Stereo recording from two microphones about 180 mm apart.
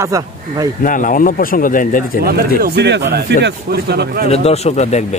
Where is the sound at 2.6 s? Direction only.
65° right (ahead or behind).